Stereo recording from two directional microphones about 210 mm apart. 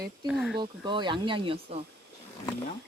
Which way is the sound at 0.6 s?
20° right (ahead or behind).